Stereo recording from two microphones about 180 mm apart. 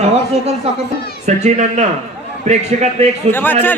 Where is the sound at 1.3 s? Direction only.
40° right (ahead or behind).